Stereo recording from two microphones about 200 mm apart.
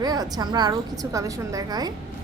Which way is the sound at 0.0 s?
20° right (ahead or behind).